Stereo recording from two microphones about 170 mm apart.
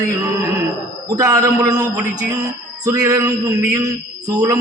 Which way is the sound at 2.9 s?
20° right (ahead or behind).